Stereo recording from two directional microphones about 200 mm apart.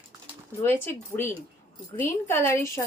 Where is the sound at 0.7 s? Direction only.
10° left (ahead or behind).